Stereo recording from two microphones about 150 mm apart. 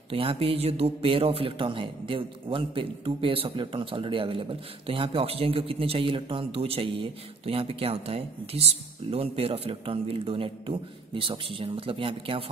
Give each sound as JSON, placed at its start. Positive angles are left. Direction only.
{"t": 0.1, "sound": "a man's voice", "side_deg": -40}